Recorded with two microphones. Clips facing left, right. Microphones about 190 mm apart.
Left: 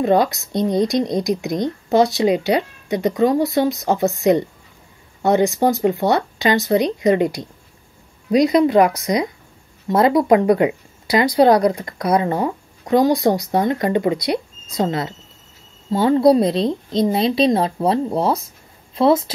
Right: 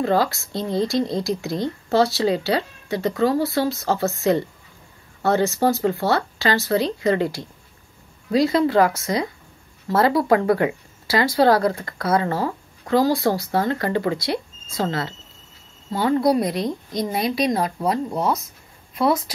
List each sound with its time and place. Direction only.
0.0 s speech: 20° left (ahead or behind)